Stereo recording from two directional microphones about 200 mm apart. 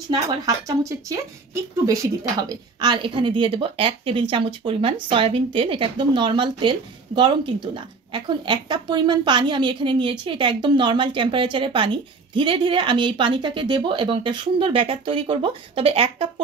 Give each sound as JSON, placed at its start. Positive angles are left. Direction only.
{"t": 0.7, "sound": "speech", "side_deg": -15}